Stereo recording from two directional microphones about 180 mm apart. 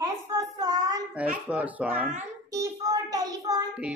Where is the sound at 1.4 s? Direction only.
10° right (ahead or behind).